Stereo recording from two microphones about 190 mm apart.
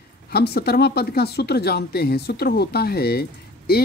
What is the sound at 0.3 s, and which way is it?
Speech, 55° left (ahead or behind).